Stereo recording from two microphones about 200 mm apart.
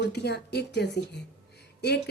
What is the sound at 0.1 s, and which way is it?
Speech, 55° left (ahead or behind).